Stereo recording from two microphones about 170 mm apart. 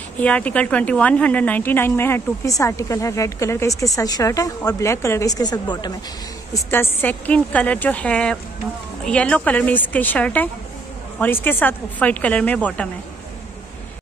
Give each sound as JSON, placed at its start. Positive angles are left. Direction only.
{"t": 0.2, "sound": "a woman's voice", "side_deg": 10}
{"t": 6.5, "sound": "a woman's voice", "side_deg": 15}